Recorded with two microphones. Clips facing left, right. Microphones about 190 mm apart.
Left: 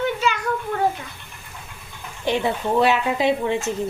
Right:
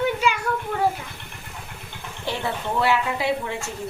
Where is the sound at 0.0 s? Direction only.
10° right (ahead or behind).